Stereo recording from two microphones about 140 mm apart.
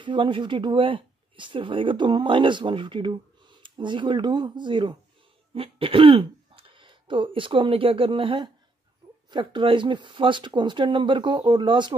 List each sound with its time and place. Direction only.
0.0 s speech: 35° right (ahead or behind)